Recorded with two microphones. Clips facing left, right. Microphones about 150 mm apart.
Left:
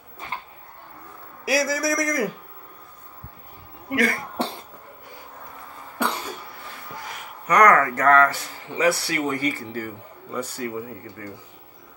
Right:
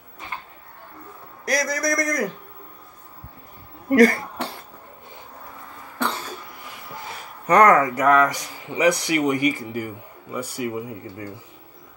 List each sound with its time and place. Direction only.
1.4 s a man's voice: 5° left (ahead or behind)
3.9 s speech: 40° right (ahead or behind)
6.0 s cough: 10° left (ahead or behind)
7.0 s a sound: 30° right (ahead or behind)
7.7 s speech: 15° right (ahead or behind)